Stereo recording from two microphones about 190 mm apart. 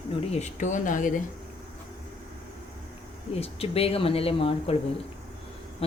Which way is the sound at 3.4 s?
30° left (ahead or behind).